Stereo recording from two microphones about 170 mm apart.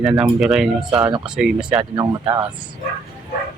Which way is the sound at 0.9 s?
25° right (ahead or behind).